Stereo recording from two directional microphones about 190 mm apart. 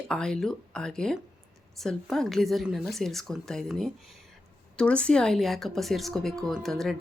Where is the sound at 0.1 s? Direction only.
5° left (ahead or behind).